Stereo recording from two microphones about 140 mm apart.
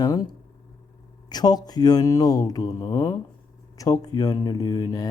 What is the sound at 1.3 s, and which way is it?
Mantra, 30° left (ahead or behind).